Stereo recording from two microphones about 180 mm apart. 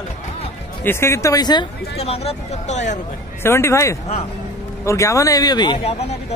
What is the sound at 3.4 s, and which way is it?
Speech, 15° left (ahead or behind).